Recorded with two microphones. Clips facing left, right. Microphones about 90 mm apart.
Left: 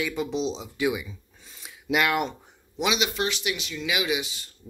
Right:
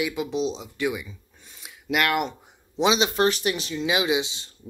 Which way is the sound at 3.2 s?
40° right (ahead or behind).